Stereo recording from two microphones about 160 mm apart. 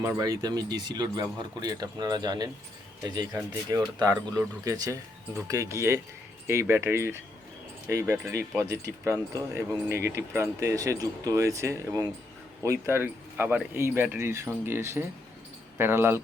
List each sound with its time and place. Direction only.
0.0 s speech: 20° right (ahead or behind)